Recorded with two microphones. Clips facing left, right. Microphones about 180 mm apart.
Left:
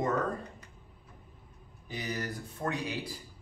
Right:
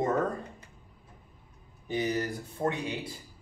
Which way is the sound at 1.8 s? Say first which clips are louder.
Right 7 dB; 25° right (ahead or behind).